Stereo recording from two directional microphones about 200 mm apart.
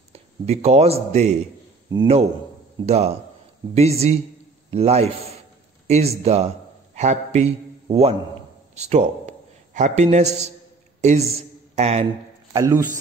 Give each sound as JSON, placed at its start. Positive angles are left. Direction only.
{"t": 0.1, "sound": "speech", "side_deg": -30}
{"t": 2.8, "sound": "a man's voice", "side_deg": -30}
{"t": 12.5, "sound": "a man's voice", "side_deg": -15}